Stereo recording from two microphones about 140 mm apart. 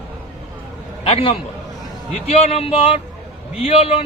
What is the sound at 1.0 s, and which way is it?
A man's voice, 40° left (ahead or behind).